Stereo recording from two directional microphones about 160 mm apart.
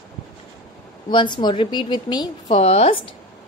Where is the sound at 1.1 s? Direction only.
30° left (ahead or behind).